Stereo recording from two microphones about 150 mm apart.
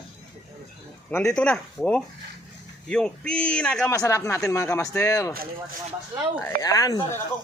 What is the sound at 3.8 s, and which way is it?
Speech, 20° left (ahead or behind).